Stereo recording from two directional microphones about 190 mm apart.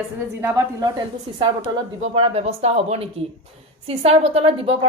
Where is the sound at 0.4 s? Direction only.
20° right (ahead or behind).